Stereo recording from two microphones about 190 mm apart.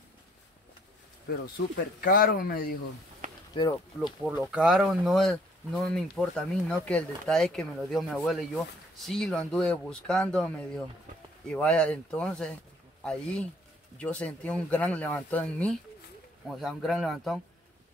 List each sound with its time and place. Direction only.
2.0 s speech: 50° left (ahead or behind)
3.2 s a sound: 40° right (ahead or behind)
4.0 s speech: centre (ahead or behind)